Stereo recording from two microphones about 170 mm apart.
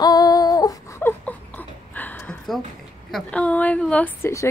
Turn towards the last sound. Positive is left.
turn(degrees=15)  # may be behind; listen again after turning